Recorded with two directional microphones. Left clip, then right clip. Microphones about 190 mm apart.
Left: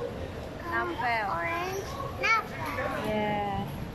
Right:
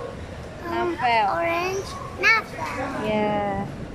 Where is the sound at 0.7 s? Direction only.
10° right (ahead or behind).